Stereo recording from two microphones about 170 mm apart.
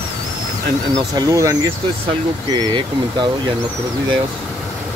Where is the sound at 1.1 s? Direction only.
20° right (ahead or behind).